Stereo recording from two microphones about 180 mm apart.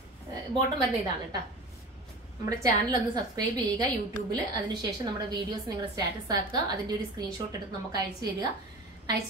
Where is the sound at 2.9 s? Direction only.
20° right (ahead or behind).